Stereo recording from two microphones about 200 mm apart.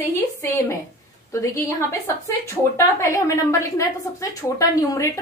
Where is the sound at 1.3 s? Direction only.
15° left (ahead or behind).